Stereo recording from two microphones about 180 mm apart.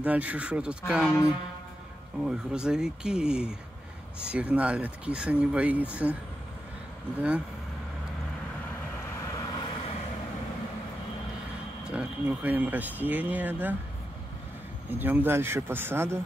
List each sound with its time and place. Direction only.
0.0 s speech: 10° right (ahead or behind)
2.2 s speech: 5° right (ahead or behind)
7.2 s speech: 5° right (ahead or behind)
9.4 s vehicle: 20° left (ahead or behind)
11.9 s speech: 10° right (ahead or behind)
14.9 s speech: 10° right (ahead or behind)